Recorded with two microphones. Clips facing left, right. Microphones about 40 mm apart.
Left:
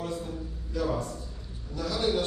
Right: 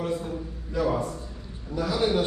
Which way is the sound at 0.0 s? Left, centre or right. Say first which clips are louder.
Right 5 dB; right.